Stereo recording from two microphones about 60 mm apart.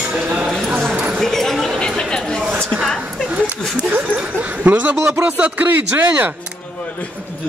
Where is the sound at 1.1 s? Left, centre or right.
Centre.